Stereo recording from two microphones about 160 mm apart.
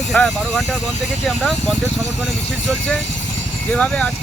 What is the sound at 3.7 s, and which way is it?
Speech, 5° left (ahead or behind).